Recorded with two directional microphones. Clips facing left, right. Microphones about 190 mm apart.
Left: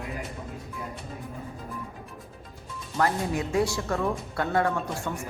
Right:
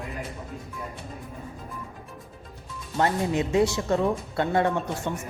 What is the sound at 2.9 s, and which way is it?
Speech, 20° right (ahead or behind).